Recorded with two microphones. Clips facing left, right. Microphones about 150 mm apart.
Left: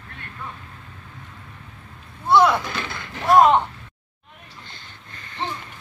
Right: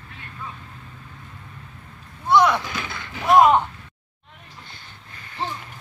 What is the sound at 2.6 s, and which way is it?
Speech, 5° right (ahead or behind).